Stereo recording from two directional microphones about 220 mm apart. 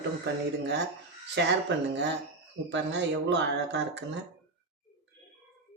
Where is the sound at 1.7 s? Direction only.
50° right (ahead or behind).